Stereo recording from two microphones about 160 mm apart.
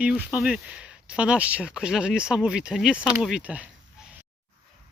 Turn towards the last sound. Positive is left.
turn(degrees=-10)  # may be behind; listen again after turning